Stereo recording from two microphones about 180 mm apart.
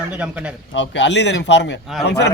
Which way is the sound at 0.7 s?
85° left.